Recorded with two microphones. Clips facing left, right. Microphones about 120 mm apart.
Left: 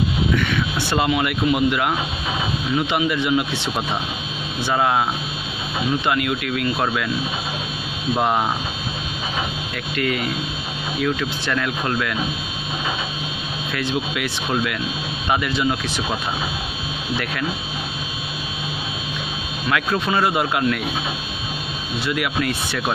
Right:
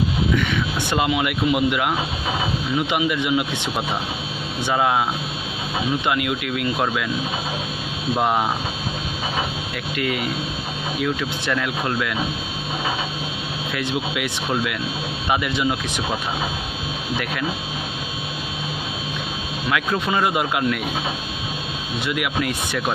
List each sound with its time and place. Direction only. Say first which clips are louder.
0.4 s speech: even; 15° right (ahead or behind)
4.7 s speech: even; 5° right (ahead or behind)
6.0 s speech: left 1 dB; 15° right (ahead or behind)
9.9 s speech: left 1 dB; 15° right (ahead or behind)
13.7 s speech: left 1 dB; 15° right (ahead or behind)
19.7 s speech: left 1 dB; 10° right (ahead or behind)
22.0 s speech: left 1 dB; 15° right (ahead or behind)